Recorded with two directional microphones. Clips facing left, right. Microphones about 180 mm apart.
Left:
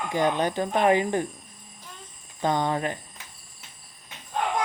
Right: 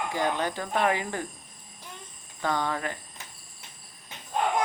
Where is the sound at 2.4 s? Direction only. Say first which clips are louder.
Left 4 dB; 20° left (ahead or behind).